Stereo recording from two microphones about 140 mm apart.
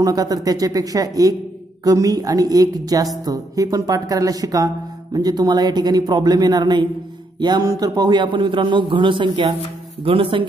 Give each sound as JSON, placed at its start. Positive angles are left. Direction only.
{"t": 0.0, "sound": "a man's voice", "side_deg": -25}